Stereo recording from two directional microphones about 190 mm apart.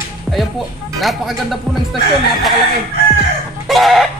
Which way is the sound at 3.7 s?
Centre (ahead or behind).